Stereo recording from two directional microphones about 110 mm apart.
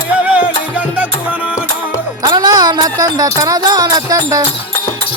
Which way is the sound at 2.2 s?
40° right (ahead or behind).